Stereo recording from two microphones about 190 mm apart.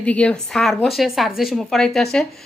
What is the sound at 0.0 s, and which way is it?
A woman's voice, 5° left (ahead or behind).